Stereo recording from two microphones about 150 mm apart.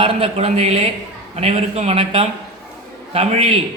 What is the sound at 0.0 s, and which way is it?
A man's voice, 40° right (ahead or behind).